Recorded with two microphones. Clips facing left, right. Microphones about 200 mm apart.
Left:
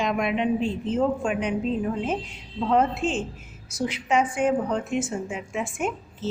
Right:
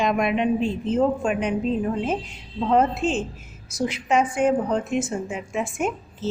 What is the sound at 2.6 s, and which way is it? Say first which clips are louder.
A woman's voice: right 2 dB; 40° right (ahead or behind).